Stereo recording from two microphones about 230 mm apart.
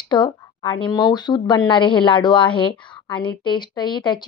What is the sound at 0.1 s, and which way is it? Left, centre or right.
A woman's voice, centre.